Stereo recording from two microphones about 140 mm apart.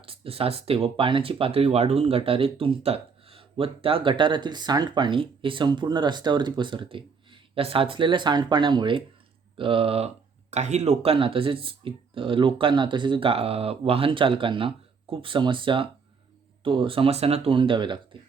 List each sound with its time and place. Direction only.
0.0 s speech: 45° right (ahead or behind)
10.5 s speech: 55° right (ahead or behind); by 18.2 s 35° right (ahead or behind)